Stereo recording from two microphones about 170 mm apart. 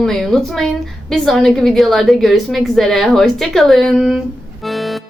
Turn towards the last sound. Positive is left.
turn(degrees=0)  # may be behind; listen again after turning